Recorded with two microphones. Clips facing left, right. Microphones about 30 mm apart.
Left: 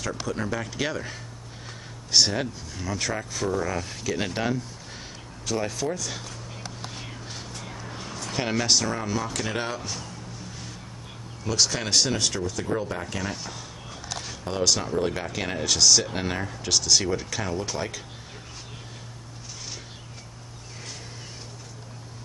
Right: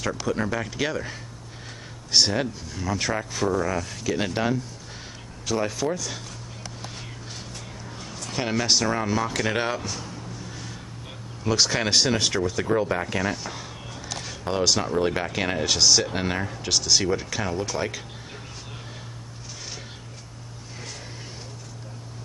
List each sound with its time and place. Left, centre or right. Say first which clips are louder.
0.3 s speech: right 4 dB; centre
2.1 s speech: right 1 dB; centre
7.8 s a sound: left 2 dB; centre
8.7 s speech: right 3 dB; centre
9.8 s a sound: right 2 dB; centre
11.4 s speech: right 3 dB; centre
13.2 s speech: right 5 dB; centre
14.0 s a sound: even; centre
14.4 s speech: right 2 dB; centre